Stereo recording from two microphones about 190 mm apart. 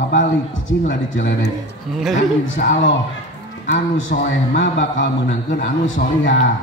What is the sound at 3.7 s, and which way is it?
A man's voice, 80° left.